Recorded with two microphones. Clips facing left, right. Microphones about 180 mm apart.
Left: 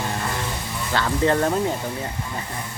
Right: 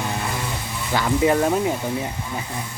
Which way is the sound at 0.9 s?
10° right (ahead or behind).